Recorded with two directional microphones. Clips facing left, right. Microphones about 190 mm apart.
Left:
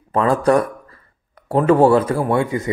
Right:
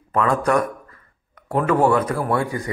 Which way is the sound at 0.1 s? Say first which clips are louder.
Left 4 dB; 30° left (ahead or behind).